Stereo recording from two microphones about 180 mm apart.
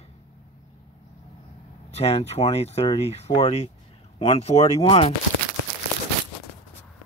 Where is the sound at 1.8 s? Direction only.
35° left (ahead or behind).